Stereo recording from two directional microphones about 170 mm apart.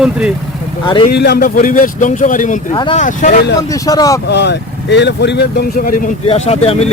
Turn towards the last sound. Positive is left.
turn(degrees=40)  # may be behind; listen again after turning